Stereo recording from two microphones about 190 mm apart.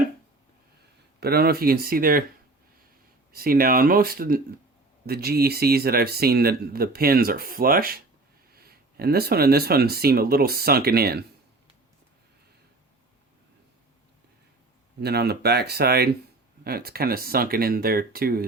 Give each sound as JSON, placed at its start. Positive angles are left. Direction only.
{"t": 1.2, "sound": "speech", "side_deg": -55}
{"t": 3.3, "sound": "speech", "side_deg": -50}
{"t": 15.0, "sound": "speech", "side_deg": -55}